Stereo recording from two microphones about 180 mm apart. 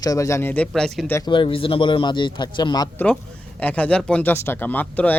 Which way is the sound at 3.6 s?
10° left (ahead or behind).